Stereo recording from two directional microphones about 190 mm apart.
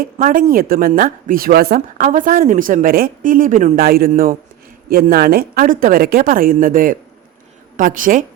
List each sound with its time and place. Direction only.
0.0 s speech: 45° right (ahead or behind)